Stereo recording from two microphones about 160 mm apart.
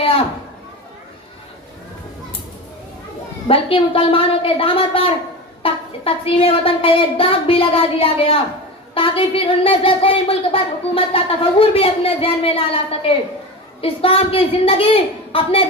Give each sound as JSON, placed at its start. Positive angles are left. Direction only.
{"t": 3.4, "sound": "a woman's voice", "side_deg": 35}